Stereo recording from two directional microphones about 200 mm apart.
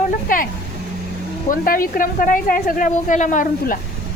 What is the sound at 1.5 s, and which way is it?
Speech, 45° left (ahead or behind).